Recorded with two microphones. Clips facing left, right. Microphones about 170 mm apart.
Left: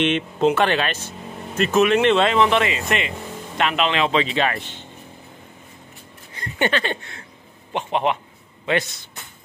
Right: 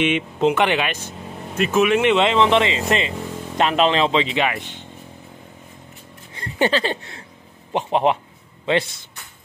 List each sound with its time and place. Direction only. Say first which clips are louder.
0.0 s speech: even; 10° right (ahead or behind); by 4.1 s 35° right (ahead or behind)
4.1 s speech: even; 20° right (ahead or behind)
6.3 s a sound: right 2 dB; 30° right (ahead or behind)
7.7 s speech: right 3 dB; 35° right (ahead or behind)